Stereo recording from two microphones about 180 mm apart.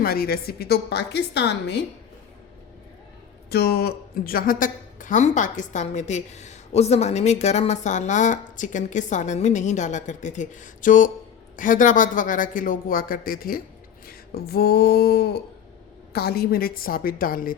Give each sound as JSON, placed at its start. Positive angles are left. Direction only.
{"t": 0.0, "sound": "a woman's voice", "side_deg": 55}
{"t": 3.5, "sound": "a woman's voice", "side_deg": 60}